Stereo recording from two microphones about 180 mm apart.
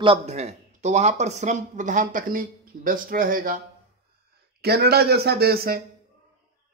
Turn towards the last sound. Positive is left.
turn(degrees=-55)  # may be behind; listen again after turning